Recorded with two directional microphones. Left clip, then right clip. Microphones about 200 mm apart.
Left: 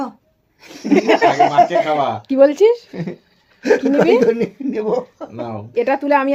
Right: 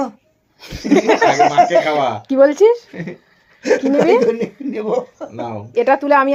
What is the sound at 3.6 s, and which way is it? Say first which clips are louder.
Speech: even; 35° left (ahead or behind).